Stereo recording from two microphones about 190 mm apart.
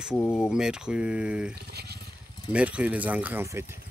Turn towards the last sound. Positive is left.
turn(degrees=-15)  # may be behind; listen again after turning